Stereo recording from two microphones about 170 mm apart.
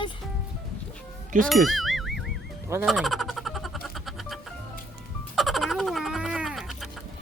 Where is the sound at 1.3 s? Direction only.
50° right (ahead or behind).